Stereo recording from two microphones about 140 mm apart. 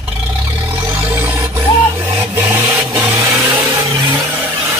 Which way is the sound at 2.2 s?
15° right (ahead or behind).